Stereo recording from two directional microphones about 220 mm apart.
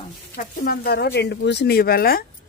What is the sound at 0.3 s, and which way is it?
A woman's voice, 45° left (ahead or behind).